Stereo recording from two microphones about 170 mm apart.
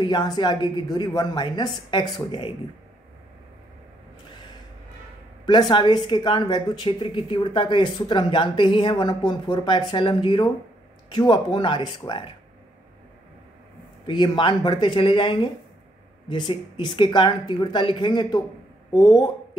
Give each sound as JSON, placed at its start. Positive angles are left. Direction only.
{"t": 0.0, "sound": "speech", "side_deg": 25}
{"t": 5.4, "sound": "speech", "side_deg": 25}
{"t": 14.0, "sound": "speech", "side_deg": 25}